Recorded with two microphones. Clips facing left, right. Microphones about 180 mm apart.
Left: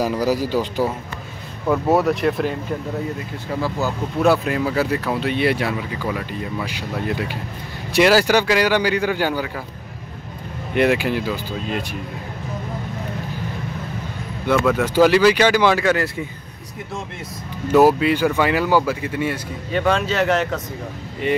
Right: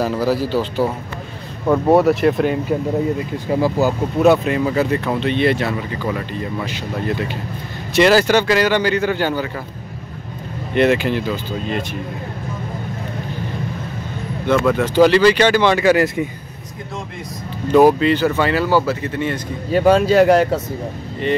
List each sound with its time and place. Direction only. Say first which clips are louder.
0.0 s speech: right 1 dB; 10° left (ahead or behind)
1.7 s speech: right 4 dB; centre (ahead or behind)
3.5 s speech: right 7 dB; 20° right (ahead or behind)
4.2 s speech: right 3 dB; centre (ahead or behind)
10.7 s speech: right 2 dB; 10° left (ahead or behind)
14.5 s speech: right 2 dB; 5° left (ahead or behind)
15.8 s speech: right 5 dB; 10° right (ahead or behind)
17.6 s speech: right 2 dB; 5° left (ahead or behind)
19.7 s speech: right 7 dB; 40° right (ahead or behind)
21.3 s speech: right 1 dB; 10° left (ahead or behind)